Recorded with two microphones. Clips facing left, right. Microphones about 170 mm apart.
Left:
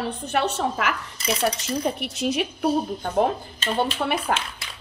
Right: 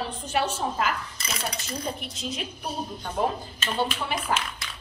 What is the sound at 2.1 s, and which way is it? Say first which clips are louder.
Speech: left 9 dB; 75° left (ahead or behind).